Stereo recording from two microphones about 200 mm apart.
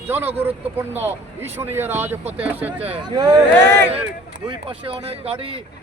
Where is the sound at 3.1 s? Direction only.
20° right (ahead or behind).